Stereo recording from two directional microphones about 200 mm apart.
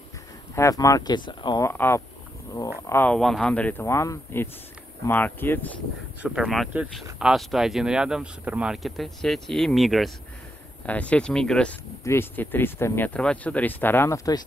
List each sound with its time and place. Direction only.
0.6 s speech: 15° left (ahead or behind)
6.2 s speech: centre (ahead or behind); by 14.4 s 15° left (ahead or behind)